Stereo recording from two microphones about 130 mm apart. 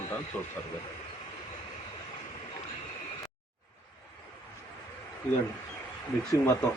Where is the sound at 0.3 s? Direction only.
10° left (ahead or behind).